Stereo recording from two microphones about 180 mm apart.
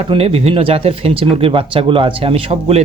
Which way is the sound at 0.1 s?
30° right (ahead or behind).